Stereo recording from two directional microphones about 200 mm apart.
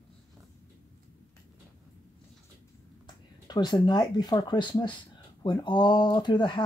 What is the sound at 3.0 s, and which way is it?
Speech, 20° left (ahead or behind).